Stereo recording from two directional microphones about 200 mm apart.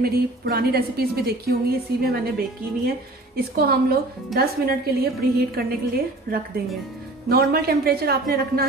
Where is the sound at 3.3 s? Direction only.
50° right (ahead or behind).